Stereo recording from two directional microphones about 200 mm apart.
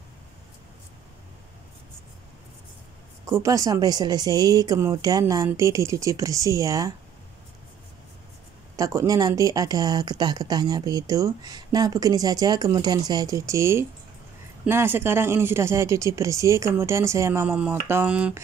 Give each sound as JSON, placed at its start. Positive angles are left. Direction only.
{"t": 3.3, "sound": "speech", "side_deg": -15}
{"t": 8.7, "sound": "speech", "side_deg": -15}